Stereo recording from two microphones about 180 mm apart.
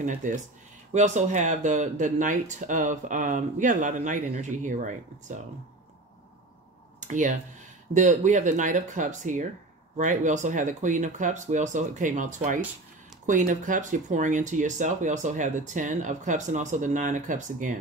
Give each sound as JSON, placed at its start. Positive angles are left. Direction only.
{"t": 0.0, "sound": "speech", "side_deg": -45}
{"t": 7.0, "sound": "speech", "side_deg": -45}